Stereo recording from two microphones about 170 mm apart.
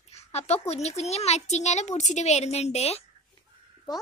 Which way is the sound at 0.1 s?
40° left (ahead or behind).